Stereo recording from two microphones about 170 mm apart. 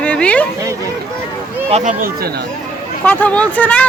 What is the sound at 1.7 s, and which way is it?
Speech, 50° right (ahead or behind).